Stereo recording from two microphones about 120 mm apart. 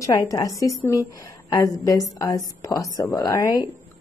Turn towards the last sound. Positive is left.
turn(degrees=30)  # may be behind; listen again after turning